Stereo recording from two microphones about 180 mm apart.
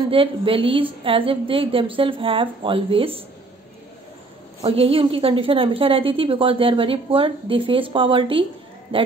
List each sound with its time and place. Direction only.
0.1 s a woman's voice: 30° right (ahead or behind)
4.6 s a woman's voice: 30° right (ahead or behind)